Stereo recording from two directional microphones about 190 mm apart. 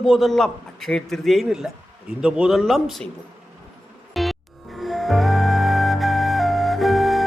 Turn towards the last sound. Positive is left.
turn(degrees=0)  # may be behind; listen again after turning